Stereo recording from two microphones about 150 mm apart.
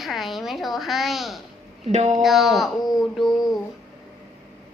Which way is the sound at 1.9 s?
50° right (ahead or behind).